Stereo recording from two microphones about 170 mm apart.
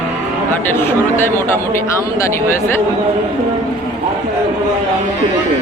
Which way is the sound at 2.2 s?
15° left (ahead or behind).